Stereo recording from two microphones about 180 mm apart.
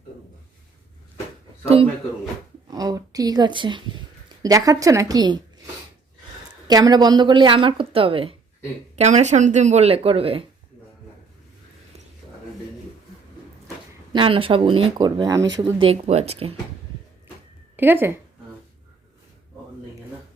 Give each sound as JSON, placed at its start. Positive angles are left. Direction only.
{"t": 1.6, "sound": "speech", "side_deg": -35}
{"t": 2.6, "sound": "a sound", "side_deg": -20}
{"t": 4.4, "sound": "speech", "side_deg": -20}
{"t": 6.7, "sound": "speech", "side_deg": -20}
{"t": 14.1, "sound": "speech", "side_deg": -30}
{"t": 15.5, "sound": "speech", "side_deg": -30}
{"t": 17.7, "sound": "speech", "side_deg": -10}